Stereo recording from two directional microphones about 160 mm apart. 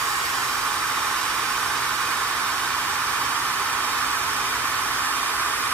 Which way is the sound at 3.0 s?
15° right (ahead or behind).